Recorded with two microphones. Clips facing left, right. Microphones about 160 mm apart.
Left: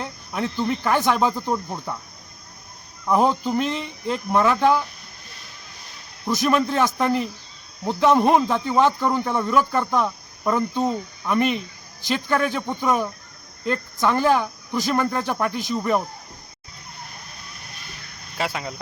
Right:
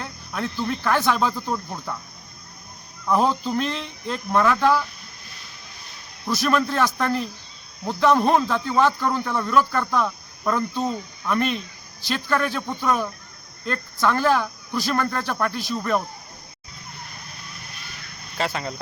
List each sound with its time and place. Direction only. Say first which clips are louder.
0.0 s speech: left 2 dB; 15° left (ahead or behind)
3.1 s speech: left 1 dB; 15° left (ahead or behind)
6.2 s speech: left 1 dB; 15° left (ahead or behind)
18.3 s speech: right 1 dB; 5° left (ahead or behind)